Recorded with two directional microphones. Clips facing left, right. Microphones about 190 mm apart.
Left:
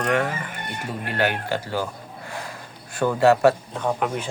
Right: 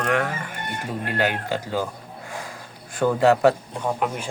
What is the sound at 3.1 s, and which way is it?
Speech, 15° right (ahead or behind).